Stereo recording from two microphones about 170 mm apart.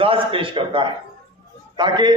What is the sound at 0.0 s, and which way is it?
A man's voice, 30° right (ahead or behind).